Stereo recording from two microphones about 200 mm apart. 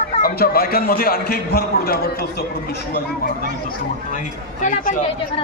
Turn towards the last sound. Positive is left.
turn(degrees=40)  # may be behind; listen again after turning